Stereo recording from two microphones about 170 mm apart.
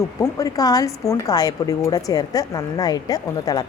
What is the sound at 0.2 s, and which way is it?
A woman's voice, 20° left (ahead or behind).